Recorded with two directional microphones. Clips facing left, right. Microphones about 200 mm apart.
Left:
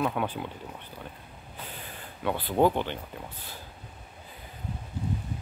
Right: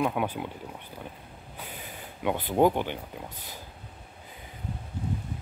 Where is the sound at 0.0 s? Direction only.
10° right (ahead or behind).